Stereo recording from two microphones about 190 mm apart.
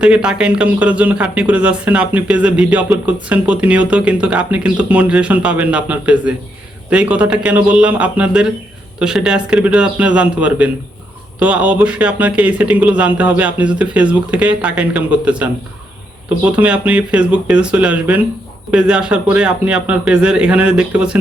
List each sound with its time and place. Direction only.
0.0 s a man's voice: 5° right (ahead or behind)